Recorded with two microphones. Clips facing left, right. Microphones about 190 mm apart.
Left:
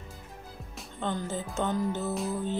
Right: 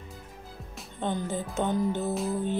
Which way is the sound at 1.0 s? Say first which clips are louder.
Right 2 dB; 15° right (ahead or behind).